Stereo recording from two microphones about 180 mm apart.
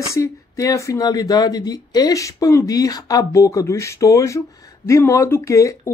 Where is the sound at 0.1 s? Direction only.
20° left (ahead or behind).